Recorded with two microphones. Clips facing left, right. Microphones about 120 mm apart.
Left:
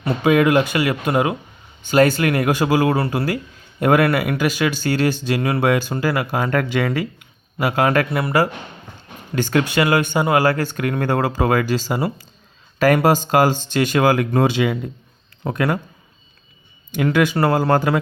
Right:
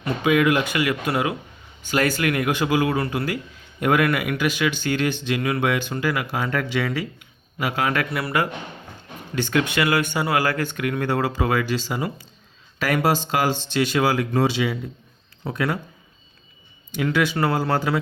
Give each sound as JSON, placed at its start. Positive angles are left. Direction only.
{"t": 0.0, "sound": "speech", "side_deg": 35}
{"t": 8.1, "sound": "speech", "side_deg": 30}
{"t": 9.3, "sound": "speech", "side_deg": 40}
{"t": 16.9, "sound": "speech", "side_deg": 50}